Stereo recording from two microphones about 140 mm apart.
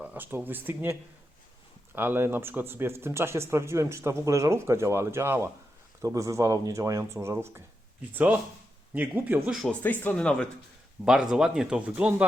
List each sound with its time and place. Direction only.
0.0 s speech: 10° right (ahead or behind)
2.0 s speech: 15° right (ahead or behind)
9.5 s speech: centre (ahead or behind)
9.8 s speech: 15° left (ahead or behind)
11.0 s speech: 5° right (ahead or behind)